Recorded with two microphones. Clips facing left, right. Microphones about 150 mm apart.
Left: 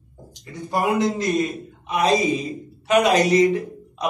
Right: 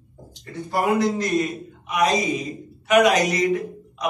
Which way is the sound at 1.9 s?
30° left (ahead or behind).